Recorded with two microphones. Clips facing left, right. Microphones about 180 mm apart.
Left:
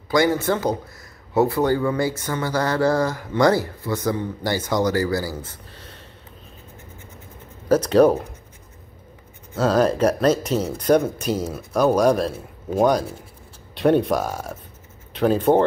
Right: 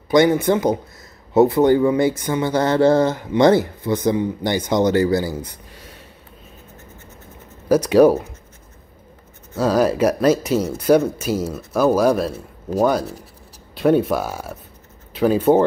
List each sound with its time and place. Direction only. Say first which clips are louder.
0.1 s speech: right 4 dB; 20° right (ahead or behind)
7.6 s speech: right 2 dB; 10° right (ahead or behind)
9.6 s speech: right 1 dB; 10° right (ahead or behind)